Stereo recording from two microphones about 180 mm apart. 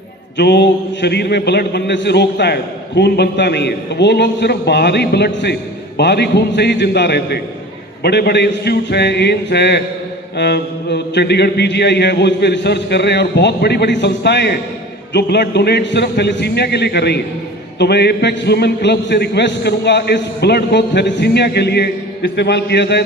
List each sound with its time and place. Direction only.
0.3 s a man's voice: 70° left (ahead or behind)